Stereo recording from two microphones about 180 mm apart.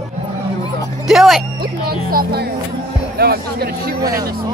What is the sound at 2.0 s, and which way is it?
Speech, 55° right (ahead or behind).